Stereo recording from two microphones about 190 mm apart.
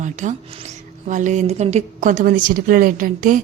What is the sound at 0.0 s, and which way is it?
A woman's voice, 40° right (ahead or behind).